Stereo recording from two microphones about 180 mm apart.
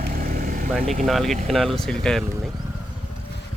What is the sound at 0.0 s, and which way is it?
Vehicle, 55° right (ahead or behind).